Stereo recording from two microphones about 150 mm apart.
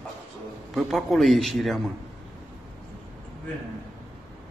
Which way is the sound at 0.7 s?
Centre (ahead or behind).